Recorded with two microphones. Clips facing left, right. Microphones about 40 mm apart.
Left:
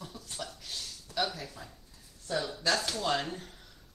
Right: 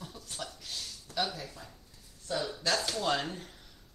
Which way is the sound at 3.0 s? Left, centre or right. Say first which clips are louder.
Even; centre.